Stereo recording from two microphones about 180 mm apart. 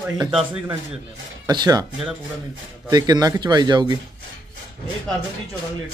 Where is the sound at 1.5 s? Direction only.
20° right (ahead or behind).